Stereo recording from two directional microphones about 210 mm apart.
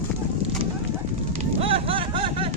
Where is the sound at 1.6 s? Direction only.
25° right (ahead or behind).